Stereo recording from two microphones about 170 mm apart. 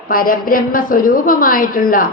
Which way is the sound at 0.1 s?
55° left (ahead or behind).